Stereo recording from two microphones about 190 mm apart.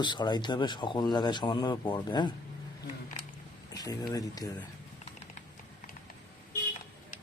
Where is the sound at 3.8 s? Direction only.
20° left (ahead or behind).